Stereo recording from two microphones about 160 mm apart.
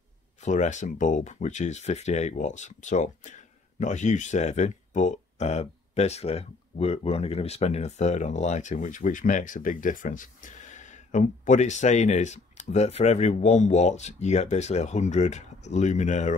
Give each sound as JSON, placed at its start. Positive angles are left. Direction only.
{"t": 0.4, "sound": "speech", "side_deg": 50}